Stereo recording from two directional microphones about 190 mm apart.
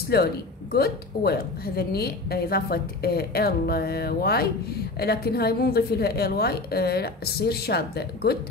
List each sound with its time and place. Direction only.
0.1 s a woman's voice: 55° left (ahead or behind)